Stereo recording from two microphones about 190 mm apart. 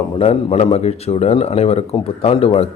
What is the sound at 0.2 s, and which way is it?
Speech, 30° left (ahead or behind).